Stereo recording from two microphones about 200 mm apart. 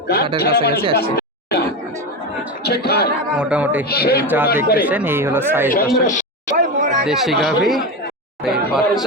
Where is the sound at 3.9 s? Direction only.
50° left (ahead or behind).